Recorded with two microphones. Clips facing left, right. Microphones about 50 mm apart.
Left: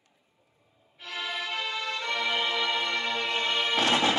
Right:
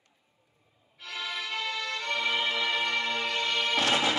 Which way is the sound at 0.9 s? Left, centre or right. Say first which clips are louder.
Left 2 dB; left.